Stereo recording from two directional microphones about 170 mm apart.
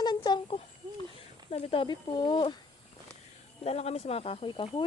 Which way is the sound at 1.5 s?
35° left (ahead or behind).